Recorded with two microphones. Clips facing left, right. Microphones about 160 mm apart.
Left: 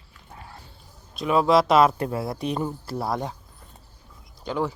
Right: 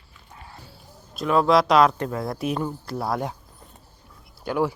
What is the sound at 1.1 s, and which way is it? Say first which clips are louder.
Speech: even; 5° left (ahead or behind).